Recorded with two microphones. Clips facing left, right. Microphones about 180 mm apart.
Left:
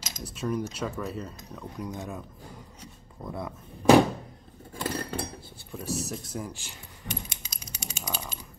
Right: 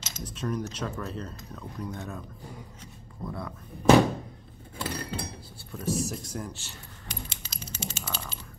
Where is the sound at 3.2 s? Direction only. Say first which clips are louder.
Left 1 dB; 20° left (ahead or behind).